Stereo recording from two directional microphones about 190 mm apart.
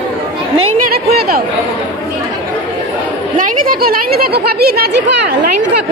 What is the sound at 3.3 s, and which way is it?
Speech, 50° right (ahead or behind).